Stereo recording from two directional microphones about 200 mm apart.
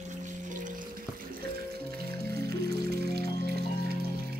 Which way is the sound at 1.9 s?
50° right (ahead or behind).